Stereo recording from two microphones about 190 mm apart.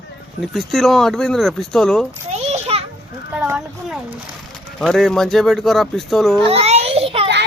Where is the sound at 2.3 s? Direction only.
35° right (ahead or behind).